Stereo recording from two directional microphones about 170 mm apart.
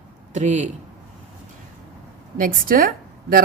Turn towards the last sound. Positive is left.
turn(degrees=-55)  # may be behind; listen again after turning